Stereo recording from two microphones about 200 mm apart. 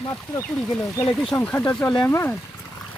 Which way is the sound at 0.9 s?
15° left (ahead or behind).